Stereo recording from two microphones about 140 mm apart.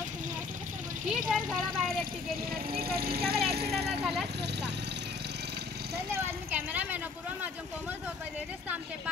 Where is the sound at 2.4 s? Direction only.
90° right.